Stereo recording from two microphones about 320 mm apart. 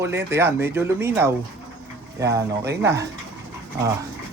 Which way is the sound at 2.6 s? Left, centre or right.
Right.